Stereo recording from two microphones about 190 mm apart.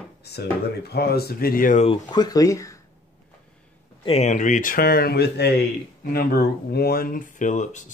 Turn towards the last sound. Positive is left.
turn(degrees=40)  # may be behind; listen again after turning